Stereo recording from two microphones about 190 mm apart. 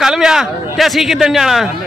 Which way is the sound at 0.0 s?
5° right (ahead or behind).